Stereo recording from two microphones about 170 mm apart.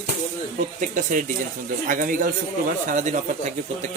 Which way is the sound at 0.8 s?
50° right (ahead or behind).